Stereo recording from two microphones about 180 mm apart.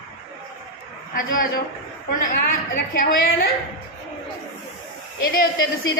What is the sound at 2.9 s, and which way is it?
Speech, 55° left (ahead or behind).